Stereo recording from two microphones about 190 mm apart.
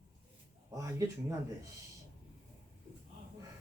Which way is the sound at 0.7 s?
15° right (ahead or behind).